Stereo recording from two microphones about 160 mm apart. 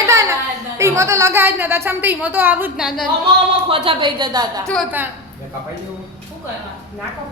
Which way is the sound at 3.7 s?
35° right (ahead or behind).